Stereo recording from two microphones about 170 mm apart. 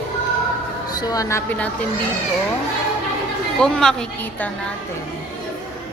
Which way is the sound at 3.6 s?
5° left (ahead or behind).